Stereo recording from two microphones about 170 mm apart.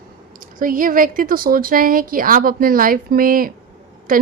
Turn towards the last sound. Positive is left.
turn(degrees=-55)  # may be behind; listen again after turning